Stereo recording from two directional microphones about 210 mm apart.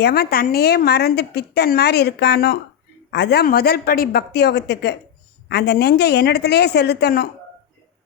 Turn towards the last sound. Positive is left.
turn(degrees=50)  # may be behind; listen again after turning